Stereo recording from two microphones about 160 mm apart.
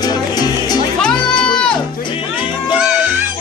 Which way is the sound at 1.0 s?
5° left (ahead or behind).